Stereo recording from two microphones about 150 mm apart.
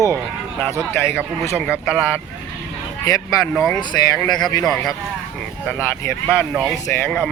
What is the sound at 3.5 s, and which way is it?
Speech, 5° left (ahead or behind).